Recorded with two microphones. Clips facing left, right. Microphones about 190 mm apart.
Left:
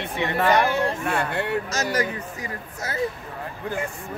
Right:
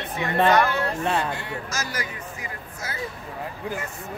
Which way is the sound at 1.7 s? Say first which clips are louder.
Left 7 dB; 35° left (ahead or behind).